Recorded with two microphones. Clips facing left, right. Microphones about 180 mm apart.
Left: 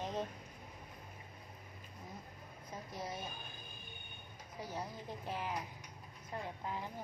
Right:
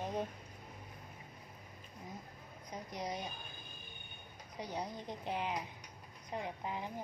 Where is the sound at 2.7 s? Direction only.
15° right (ahead or behind).